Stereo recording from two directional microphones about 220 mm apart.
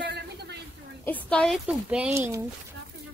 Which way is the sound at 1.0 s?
5° left (ahead or behind).